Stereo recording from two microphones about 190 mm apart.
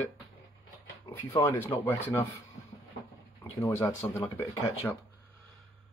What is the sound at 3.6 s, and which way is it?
Speech, 15° left (ahead or behind).